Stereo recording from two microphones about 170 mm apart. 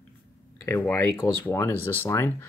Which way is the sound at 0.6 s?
15° left (ahead or behind).